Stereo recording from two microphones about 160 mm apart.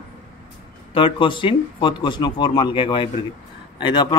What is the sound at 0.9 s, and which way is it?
A man's voice, 30° left (ahead or behind).